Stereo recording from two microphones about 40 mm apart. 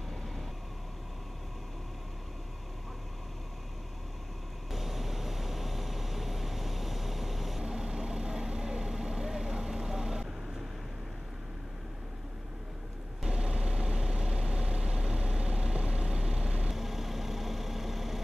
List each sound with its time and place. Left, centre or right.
4.6 s vehicle: centre
13.3 s vehicle: centre